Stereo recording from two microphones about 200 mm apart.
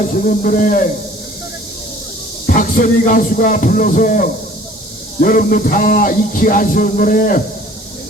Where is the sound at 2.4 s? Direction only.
45° left (ahead or behind).